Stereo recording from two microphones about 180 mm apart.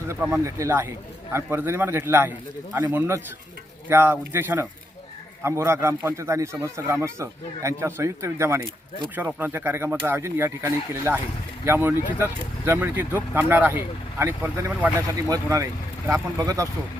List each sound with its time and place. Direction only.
0.4 s a man's voice: 15° right (ahead or behind)